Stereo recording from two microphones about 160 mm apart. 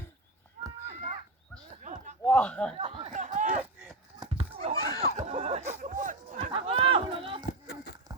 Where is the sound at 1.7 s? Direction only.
50° right (ahead or behind).